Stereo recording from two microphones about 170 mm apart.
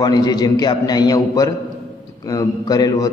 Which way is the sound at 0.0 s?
25° left (ahead or behind).